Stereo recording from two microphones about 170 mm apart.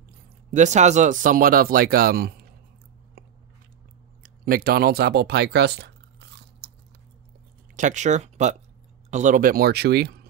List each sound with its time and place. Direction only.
0.5 s speech: 45° right (ahead or behind); by 2.4 s 60° right (ahead or behind)
4.2 s speech: 60° right (ahead or behind)
7.7 s speech: 45° right (ahead or behind); by 10.2 s 70° right (ahead or behind)